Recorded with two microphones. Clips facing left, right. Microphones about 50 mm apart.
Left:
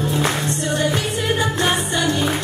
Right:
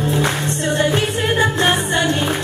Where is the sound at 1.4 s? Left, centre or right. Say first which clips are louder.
Right 6 dB; right.